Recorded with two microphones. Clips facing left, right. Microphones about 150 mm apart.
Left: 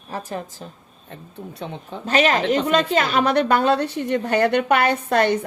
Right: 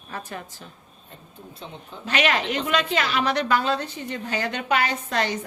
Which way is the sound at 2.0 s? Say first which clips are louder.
Left 5 dB; 40° left (ahead or behind).